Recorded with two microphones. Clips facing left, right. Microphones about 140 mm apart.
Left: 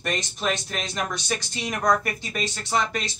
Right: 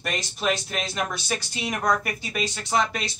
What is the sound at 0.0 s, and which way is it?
Speech, 5° right (ahead or behind).